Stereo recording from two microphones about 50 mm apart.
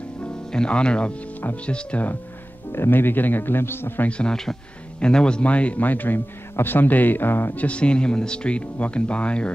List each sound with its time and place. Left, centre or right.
0.5 s speech: centre
2.7 s speech: left
4.1 s speech: left
7.5 s speech: left